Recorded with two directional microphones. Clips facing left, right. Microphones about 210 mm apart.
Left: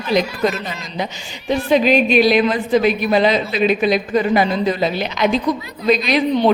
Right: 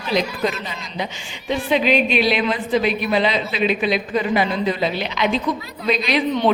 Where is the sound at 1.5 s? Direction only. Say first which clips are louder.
Left 4 dB; 40° left (ahead or behind).